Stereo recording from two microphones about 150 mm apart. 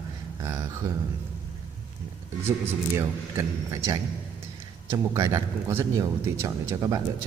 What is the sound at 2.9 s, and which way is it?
Speech, 20° right (ahead or behind).